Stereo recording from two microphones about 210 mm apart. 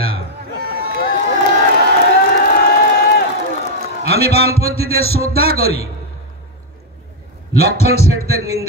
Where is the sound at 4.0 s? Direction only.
30° left (ahead or behind).